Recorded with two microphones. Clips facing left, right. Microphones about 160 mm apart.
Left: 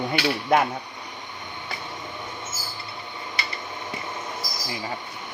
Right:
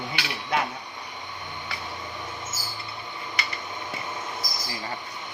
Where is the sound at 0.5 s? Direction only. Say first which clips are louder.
Left 6 dB; 50° left (ahead or behind).